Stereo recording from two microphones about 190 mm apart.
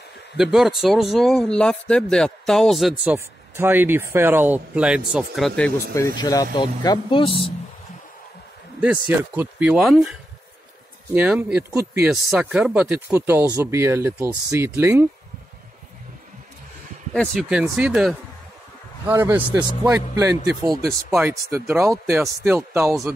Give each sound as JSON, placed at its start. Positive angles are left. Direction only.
{"t": 0.4, "sound": "speech", "side_deg": 0}
{"t": 3.5, "sound": "speech", "side_deg": -10}
{"t": 6.1, "sound": "speech", "side_deg": 20}
{"t": 8.8, "sound": "speech", "side_deg": -10}
{"t": 11.1, "sound": "speech", "side_deg": -5}
{"t": 12.1, "sound": "speech", "side_deg": -5}
{"t": 17.1, "sound": "speech", "side_deg": 0}